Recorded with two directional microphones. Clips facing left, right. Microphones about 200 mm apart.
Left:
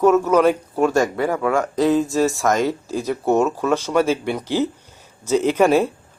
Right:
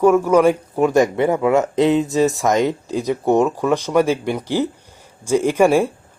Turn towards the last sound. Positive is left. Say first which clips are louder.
# right 1 dB
turn(degrees=-10)  # may be behind; listen again after turning